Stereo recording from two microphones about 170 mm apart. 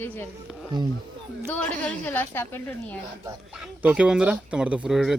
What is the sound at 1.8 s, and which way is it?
A woman's voice, 10° left (ahead or behind).